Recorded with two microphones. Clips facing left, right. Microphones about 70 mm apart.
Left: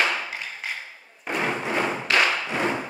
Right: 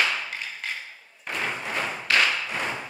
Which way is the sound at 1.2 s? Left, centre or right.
Centre.